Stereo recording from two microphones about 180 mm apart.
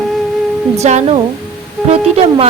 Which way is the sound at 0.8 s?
40° right (ahead or behind).